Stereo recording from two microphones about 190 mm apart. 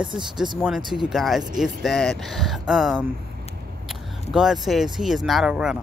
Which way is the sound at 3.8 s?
Centre (ahead or behind).